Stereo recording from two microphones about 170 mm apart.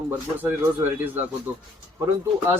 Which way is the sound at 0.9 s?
10° right (ahead or behind).